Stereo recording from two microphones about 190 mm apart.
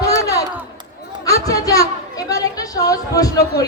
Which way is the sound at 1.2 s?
20° left (ahead or behind).